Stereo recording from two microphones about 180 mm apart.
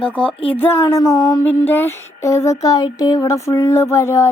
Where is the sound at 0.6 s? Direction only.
15° left (ahead or behind).